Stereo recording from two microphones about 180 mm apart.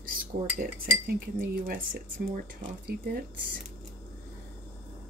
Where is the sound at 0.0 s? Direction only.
50° right (ahead or behind).